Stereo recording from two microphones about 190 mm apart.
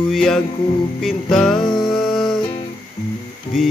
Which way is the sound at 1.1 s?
Centre (ahead or behind).